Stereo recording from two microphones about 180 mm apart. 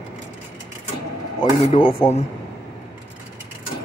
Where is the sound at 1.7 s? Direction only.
30° left (ahead or behind).